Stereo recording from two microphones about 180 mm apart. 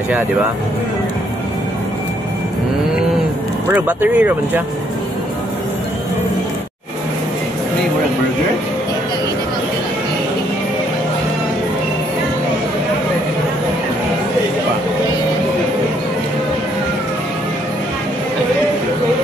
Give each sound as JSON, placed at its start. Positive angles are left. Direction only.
{"t": 3.7, "sound": "speech", "side_deg": -10}